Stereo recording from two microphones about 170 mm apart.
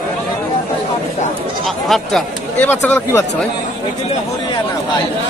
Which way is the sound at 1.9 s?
Centre (ahead or behind).